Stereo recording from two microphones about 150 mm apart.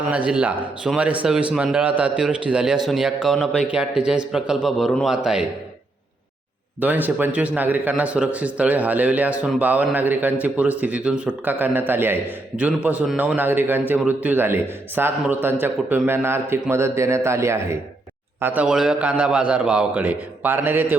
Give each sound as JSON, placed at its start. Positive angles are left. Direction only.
{"t": 0.1, "sound": "a man's voice", "side_deg": -10}
{"t": 6.7, "sound": "a man's voice", "side_deg": -10}